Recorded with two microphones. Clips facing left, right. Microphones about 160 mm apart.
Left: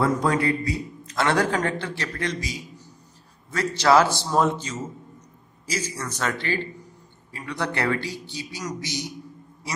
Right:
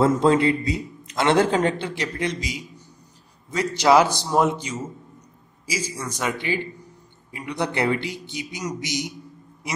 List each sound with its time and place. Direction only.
0.0 s a man's voice: 25° right (ahead or behind)